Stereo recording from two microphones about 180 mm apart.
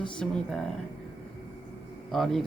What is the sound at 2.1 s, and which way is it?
Speech, centre (ahead or behind).